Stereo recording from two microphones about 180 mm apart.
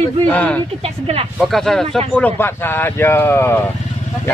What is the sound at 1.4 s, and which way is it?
Speech, centre (ahead or behind).